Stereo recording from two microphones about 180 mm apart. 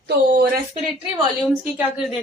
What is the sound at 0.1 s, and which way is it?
Speech, 60° right (ahead or behind).